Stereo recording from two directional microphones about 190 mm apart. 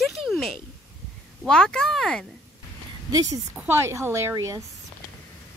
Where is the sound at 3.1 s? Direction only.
20° right (ahead or behind).